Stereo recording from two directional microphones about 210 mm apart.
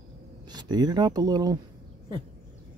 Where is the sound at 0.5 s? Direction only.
20° right (ahead or behind).